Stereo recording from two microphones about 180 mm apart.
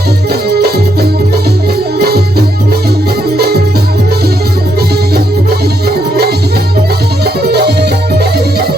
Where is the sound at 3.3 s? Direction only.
60° right (ahead or behind).